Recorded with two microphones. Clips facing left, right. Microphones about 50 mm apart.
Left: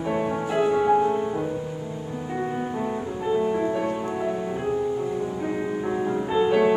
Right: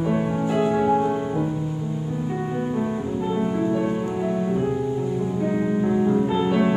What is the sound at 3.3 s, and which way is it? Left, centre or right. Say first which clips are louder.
Music: left 4 dB; centre.